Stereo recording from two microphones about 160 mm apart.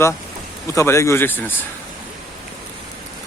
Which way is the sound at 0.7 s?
15° left (ahead or behind).